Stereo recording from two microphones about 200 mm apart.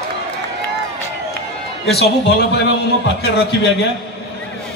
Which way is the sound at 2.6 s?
55° left (ahead or behind).